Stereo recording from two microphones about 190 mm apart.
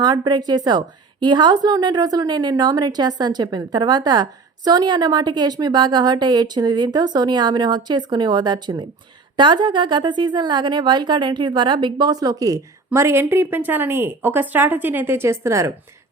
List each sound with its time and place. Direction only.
0.0 s a woman's voice: 25° right (ahead or behind)